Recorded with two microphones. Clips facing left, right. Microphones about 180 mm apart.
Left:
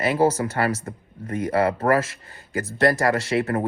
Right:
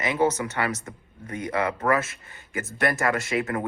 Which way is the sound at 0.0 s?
30° left (ahead or behind).